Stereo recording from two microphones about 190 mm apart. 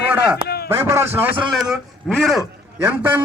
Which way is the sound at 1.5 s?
Centre (ahead or behind).